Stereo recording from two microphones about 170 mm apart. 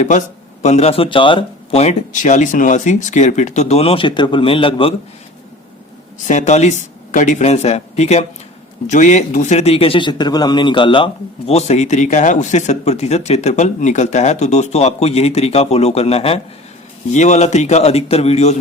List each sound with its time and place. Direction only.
0.6 s a man's voice: 40° left (ahead or behind)
6.2 s a man's voice: 45° left (ahead or behind)